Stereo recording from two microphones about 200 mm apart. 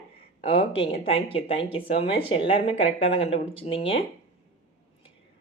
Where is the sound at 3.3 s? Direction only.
30° left (ahead or behind).